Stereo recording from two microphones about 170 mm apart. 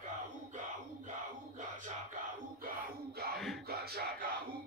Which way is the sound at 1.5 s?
45° right (ahead or behind).